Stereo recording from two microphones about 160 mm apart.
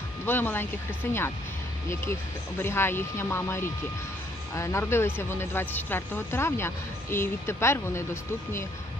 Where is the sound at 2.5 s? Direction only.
15° left (ahead or behind).